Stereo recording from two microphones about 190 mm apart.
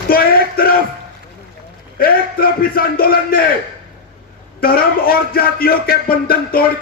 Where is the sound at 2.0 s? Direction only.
50° left (ahead or behind).